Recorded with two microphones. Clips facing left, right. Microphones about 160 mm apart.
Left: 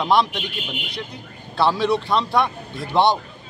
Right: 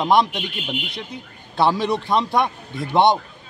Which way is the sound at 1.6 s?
15° right (ahead or behind).